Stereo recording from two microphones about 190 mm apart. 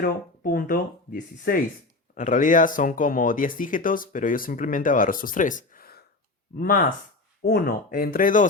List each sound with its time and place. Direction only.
0.0 s speech: 50° left (ahead or behind)